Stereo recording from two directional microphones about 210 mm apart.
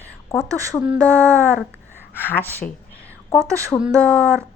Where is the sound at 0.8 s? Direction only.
5° right (ahead or behind).